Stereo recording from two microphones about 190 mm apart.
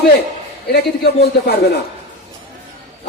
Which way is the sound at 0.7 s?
60° left (ahead or behind).